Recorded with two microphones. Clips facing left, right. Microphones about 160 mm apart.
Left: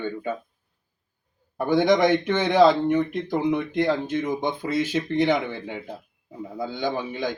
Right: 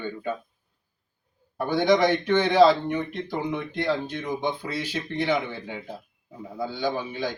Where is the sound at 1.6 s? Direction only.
15° left (ahead or behind).